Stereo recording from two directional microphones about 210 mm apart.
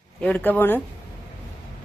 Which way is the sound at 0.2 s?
5° left (ahead or behind).